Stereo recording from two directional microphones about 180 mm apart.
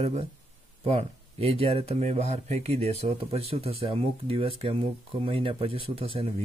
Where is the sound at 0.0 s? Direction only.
35° right (ahead or behind).